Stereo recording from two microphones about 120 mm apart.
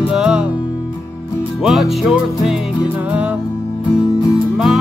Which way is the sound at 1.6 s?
Centre (ahead or behind).